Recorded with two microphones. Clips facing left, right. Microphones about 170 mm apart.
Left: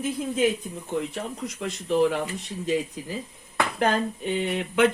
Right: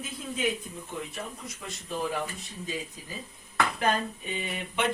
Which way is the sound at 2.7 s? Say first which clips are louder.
Left 11 dB; 90° left.